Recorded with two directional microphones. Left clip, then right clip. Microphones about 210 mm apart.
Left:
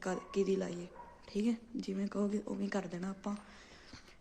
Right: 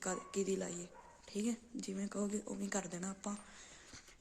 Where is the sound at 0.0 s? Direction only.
5° right (ahead or behind).